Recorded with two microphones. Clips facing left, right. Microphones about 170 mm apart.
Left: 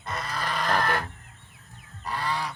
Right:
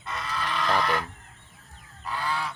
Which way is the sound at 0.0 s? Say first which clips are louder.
Even; 40° left (ahead or behind).